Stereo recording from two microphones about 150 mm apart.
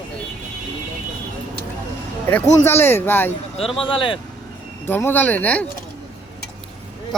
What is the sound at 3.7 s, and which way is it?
Speech, 35° left (ahead or behind).